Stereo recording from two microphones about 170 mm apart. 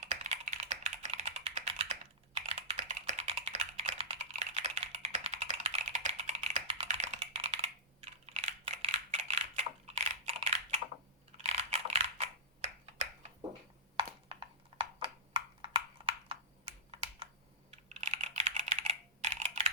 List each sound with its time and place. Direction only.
0.0 s computer keyboard: 40° right (ahead or behind)
13.9 s a sound: 30° right (ahead or behind)
16.9 s computer keyboard: 35° right (ahead or behind)